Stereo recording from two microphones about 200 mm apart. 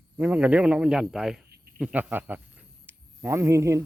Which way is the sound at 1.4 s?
50° right (ahead or behind).